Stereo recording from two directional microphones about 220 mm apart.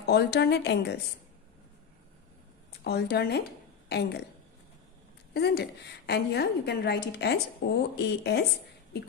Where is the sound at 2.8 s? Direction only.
45° left (ahead or behind).